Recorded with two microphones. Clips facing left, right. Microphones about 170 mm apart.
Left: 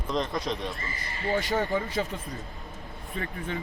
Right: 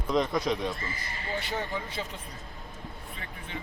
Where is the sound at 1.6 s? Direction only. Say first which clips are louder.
Left 7 dB; 50° left (ahead or behind).